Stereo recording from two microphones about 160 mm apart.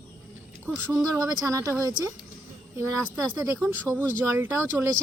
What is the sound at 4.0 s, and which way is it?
Speech, 15° right (ahead or behind).